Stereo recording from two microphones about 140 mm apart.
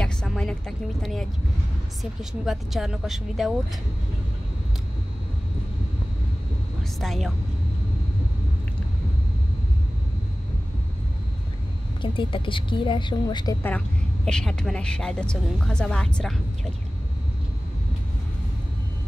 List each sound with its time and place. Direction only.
0.0 s a woman's voice: 5° left (ahead or behind)
2.4 s a woman's voice: centre (ahead or behind)
6.8 s speech: centre (ahead or behind)
12.0 s a woman's voice: 35° left (ahead or behind)
13.6 s a woman's voice: 15° left (ahead or behind)